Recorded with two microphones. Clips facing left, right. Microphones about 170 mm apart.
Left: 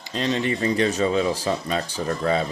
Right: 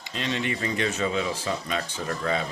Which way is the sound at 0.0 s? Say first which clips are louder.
Left 5 dB; 35° left (ahead or behind).